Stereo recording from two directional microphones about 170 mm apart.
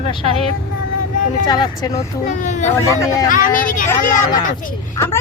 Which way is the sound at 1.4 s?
25° left (ahead or behind).